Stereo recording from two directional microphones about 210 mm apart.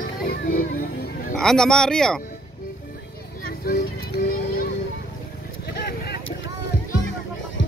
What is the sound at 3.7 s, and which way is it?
Speech, 50° left (ahead or behind).